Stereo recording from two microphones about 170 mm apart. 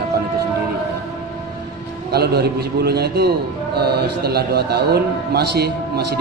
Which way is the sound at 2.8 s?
70° right (ahead or behind).